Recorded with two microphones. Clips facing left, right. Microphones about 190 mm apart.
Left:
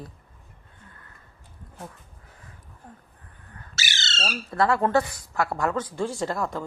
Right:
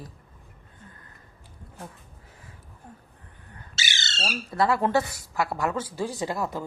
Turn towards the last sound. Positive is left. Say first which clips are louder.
# left 1 dB
turn(degrees=-5)  # may be behind; listen again after turning